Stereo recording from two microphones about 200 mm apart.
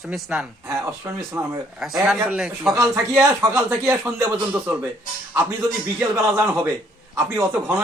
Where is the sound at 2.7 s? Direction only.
15° right (ahead or behind).